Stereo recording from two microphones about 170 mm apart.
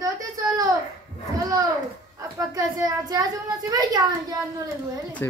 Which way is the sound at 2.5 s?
20° right (ahead or behind).